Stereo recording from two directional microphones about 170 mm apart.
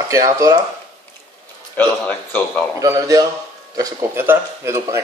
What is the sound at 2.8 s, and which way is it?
A man's voice, 20° right (ahead or behind).